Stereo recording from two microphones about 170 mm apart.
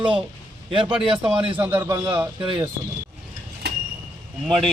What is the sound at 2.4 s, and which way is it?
Speech, 30° right (ahead or behind).